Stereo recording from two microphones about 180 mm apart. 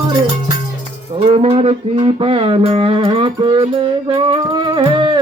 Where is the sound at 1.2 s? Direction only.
35° right (ahead or behind).